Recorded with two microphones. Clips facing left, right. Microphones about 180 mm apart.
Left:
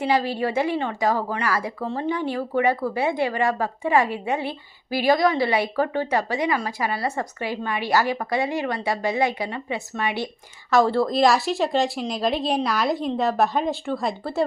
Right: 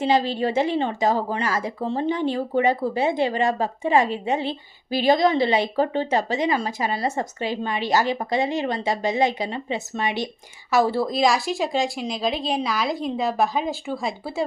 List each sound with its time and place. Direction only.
0.0 s a woman's voice: 20° right (ahead or behind)
10.7 s a woman's voice: 5° right (ahead or behind)